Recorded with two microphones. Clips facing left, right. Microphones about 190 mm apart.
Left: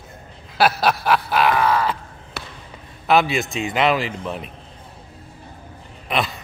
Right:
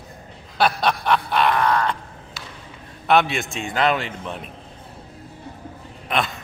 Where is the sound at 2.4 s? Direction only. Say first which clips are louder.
Left 6 dB; 60° left (ahead or behind).